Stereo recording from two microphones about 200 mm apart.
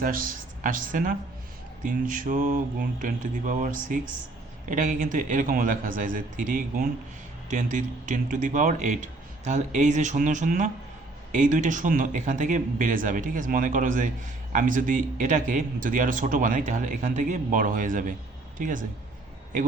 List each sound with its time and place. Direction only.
0.0 s a man's voice: 45° right (ahead or behind)